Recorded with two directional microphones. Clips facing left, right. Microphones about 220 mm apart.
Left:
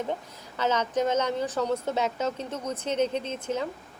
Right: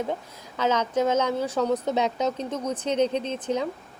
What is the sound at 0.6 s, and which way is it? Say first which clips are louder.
A woman's voice: right 2 dB; 10° right (ahead or behind).